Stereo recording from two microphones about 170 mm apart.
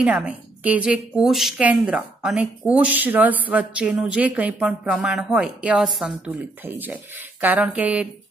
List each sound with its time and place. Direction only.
0.0 s a woman's voice: 10° right (ahead or behind)